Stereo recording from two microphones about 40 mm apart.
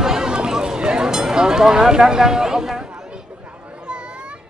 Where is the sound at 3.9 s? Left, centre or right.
Right.